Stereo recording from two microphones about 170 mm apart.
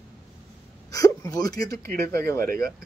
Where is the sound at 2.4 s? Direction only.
60° right (ahead or behind).